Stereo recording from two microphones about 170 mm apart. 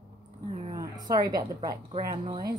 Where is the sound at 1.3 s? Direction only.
20° right (ahead or behind).